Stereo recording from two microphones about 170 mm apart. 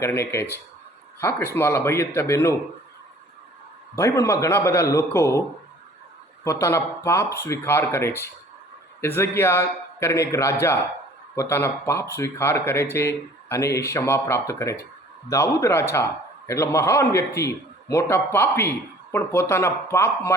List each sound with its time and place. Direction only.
0.0 s speech: 15° left (ahead or behind)
3.9 s speech: 15° left (ahead or behind)
6.4 s speech: 15° left (ahead or behind)